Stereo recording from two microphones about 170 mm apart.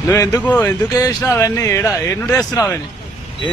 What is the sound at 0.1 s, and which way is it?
Speech, 10° left (ahead or behind).